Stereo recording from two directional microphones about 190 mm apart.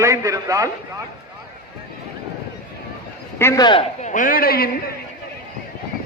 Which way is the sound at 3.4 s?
15° left (ahead or behind).